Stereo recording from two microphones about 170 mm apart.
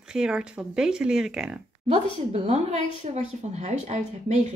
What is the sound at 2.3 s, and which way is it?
Speech, 40° right (ahead or behind).